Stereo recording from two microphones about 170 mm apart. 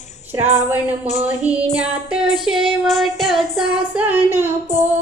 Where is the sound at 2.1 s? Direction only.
5° right (ahead or behind).